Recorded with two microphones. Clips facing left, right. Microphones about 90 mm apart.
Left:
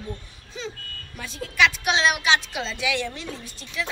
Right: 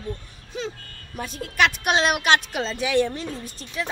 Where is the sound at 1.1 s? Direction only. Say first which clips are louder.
Right 2 dB; 45° right (ahead or behind).